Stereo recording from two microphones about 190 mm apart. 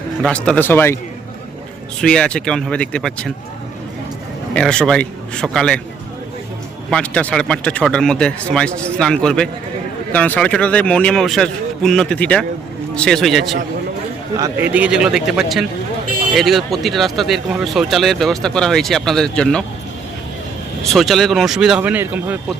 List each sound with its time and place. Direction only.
0.2 s speech: 5° left (ahead or behind)
2.0 s speech: 5° left (ahead or behind)
4.5 s speech: 5° left (ahead or behind)
6.9 s speech: 5° left (ahead or behind)
14.3 s speech: 20° right (ahead or behind)
14.7 s speech: 5° right (ahead or behind)
20.8 s speech: centre (ahead or behind)